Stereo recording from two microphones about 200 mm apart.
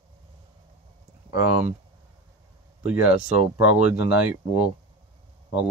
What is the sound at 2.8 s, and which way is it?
Speech, 5° right (ahead or behind).